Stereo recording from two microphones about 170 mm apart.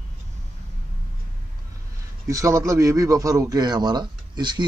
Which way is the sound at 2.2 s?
20° right (ahead or behind).